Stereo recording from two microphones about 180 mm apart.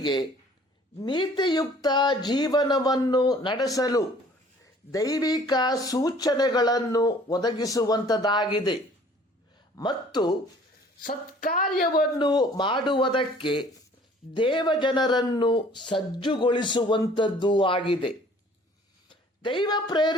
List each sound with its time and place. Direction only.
0.0 s speech: 25° left (ahead or behind)
11.0 s speech: 50° left (ahead or behind)
12.2 s speech: 25° left (ahead or behind)